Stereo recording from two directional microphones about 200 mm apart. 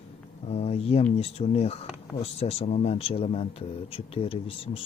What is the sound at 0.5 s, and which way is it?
Speech, 30° left (ahead or behind).